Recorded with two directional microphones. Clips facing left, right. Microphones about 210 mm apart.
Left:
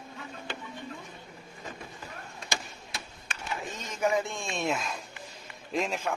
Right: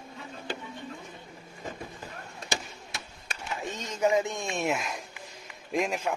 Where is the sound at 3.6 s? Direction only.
25° right (ahead or behind).